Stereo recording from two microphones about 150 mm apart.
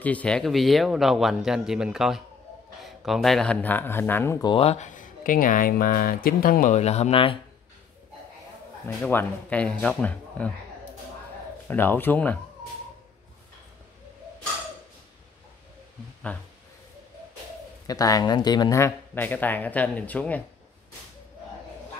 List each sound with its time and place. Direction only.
0.0 s speech: 10° left (ahead or behind)
4.5 s speech: 40° left (ahead or behind)
8.8 s speech: 15° left (ahead or behind)
11.6 s speech: 15° left (ahead or behind)
17.8 s speech: 25° left (ahead or behind)